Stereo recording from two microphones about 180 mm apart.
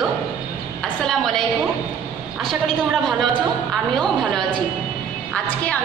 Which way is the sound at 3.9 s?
Centre (ahead or behind).